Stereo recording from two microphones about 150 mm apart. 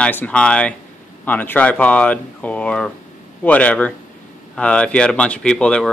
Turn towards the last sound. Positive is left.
turn(degrees=5)  # may be behind; listen again after turning